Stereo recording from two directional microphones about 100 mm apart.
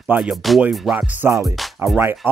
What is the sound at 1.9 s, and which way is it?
Speech, 20° right (ahead or behind).